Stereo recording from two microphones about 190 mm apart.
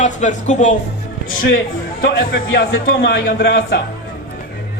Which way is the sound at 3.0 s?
60° left (ahead or behind).